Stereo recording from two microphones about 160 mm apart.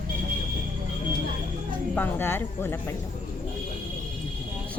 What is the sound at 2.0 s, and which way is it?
Speech, 15° left (ahead or behind).